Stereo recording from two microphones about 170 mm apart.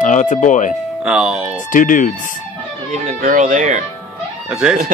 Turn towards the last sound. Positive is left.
turn(degrees=-5)  # may be behind; listen again after turning